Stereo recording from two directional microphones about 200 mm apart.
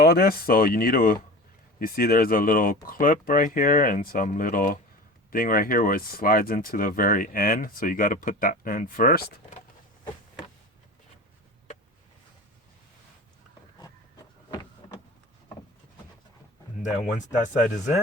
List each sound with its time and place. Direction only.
0.0 s speech: 50° left (ahead or behind)
17.2 s speech: 40° left (ahead or behind)